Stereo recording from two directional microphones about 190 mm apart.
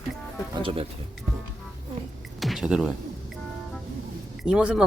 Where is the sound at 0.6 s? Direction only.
30° right (ahead or behind).